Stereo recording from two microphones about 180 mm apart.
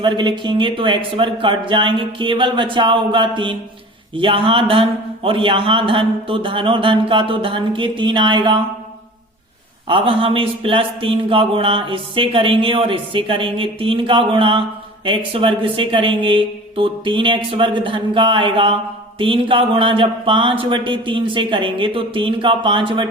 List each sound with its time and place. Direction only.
0.0 s mantra: 25° right (ahead or behind)
9.9 s mantra: 30° right (ahead or behind)